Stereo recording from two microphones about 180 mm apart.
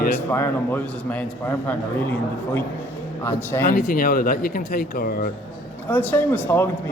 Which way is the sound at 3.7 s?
55° left (ahead or behind).